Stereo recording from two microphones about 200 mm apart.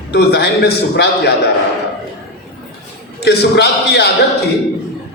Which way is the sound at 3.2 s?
55° left (ahead or behind).